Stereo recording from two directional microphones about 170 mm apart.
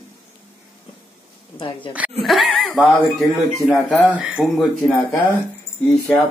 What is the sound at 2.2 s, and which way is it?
Speech, centre (ahead or behind).